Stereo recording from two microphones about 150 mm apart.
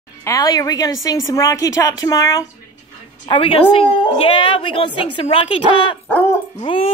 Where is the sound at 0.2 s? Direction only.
25° left (ahead or behind).